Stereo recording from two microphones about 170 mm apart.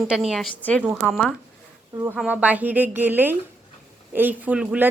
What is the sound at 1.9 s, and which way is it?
Speech, 15° right (ahead or behind).